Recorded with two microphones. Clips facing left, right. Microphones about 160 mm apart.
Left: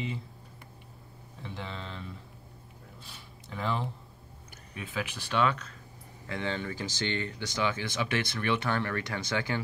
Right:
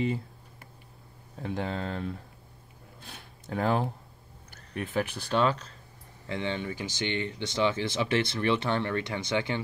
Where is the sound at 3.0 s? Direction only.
50° right (ahead or behind).